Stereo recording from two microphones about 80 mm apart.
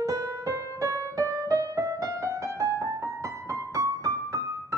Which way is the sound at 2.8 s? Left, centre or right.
Right.